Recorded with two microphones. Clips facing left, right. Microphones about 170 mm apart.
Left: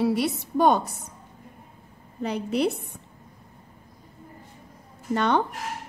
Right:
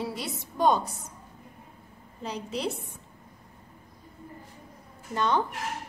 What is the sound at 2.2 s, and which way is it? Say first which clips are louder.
Speech: left 7 dB; 60° left (ahead or behind).